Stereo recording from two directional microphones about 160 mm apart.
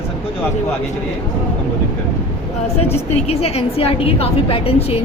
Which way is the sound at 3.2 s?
40° left (ahead or behind).